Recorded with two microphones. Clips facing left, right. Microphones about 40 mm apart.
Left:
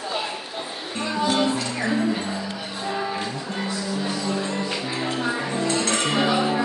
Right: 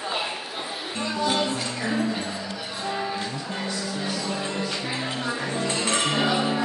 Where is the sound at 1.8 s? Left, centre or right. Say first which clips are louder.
Left 2 dB; centre.